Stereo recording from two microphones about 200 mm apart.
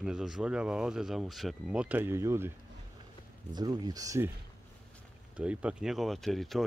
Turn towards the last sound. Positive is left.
turn(degrees=0)  # may be behind; listen again after turning